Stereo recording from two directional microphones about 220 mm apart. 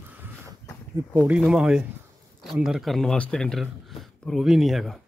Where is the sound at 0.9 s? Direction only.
5° right (ahead or behind).